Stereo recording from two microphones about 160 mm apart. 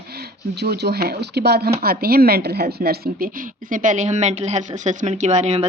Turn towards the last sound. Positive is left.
turn(degrees=-40)  # may be behind; listen again after turning